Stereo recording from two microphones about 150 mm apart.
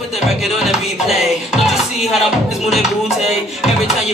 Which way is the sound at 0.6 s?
Centre (ahead or behind).